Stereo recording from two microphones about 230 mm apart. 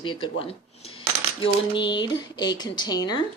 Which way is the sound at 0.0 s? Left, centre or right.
Left.